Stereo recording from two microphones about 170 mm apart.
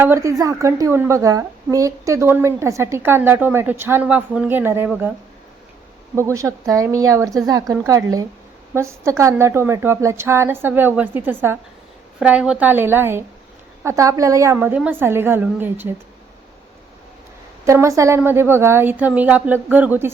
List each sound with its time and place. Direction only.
0.0 s a woman's voice: 15° right (ahead or behind)
6.1 s a woman's voice: 15° right (ahead or behind)
17.7 s a woman's voice: 15° right (ahead or behind)